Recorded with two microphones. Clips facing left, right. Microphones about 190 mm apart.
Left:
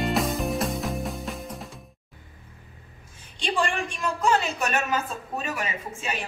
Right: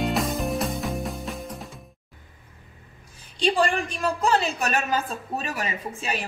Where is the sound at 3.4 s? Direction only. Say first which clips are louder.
Right 4 dB; 35° right (ahead or behind).